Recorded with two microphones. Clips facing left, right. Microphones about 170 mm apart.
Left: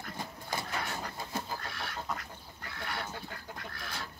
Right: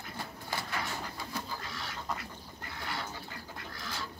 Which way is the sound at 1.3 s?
60° left (ahead or behind).